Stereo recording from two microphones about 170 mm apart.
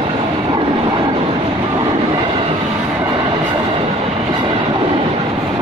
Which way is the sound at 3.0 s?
25° right (ahead or behind).